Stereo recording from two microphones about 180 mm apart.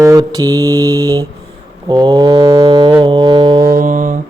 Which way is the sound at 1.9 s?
25° right (ahead or behind).